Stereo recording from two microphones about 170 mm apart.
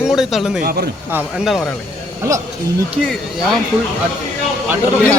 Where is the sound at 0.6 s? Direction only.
65° right (ahead or behind).